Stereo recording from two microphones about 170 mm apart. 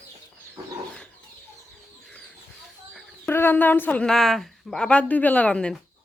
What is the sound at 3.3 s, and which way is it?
Speech, 10° left (ahead or behind).